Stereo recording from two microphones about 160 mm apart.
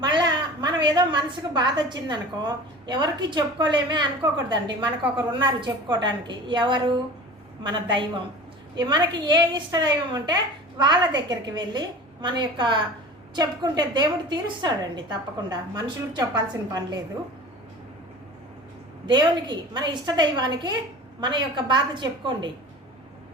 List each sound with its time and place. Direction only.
0.0 s a woman's voice: 30° right (ahead or behind)
19.0 s a woman's voice: 25° right (ahead or behind)